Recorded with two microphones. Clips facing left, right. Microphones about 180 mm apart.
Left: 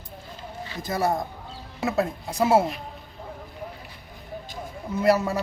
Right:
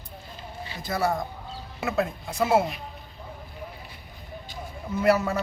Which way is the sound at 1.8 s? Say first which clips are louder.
Left 2 dB; 35° left (ahead or behind).